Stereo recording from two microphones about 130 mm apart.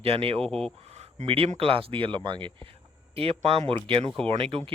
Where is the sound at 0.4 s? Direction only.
5° left (ahead or behind).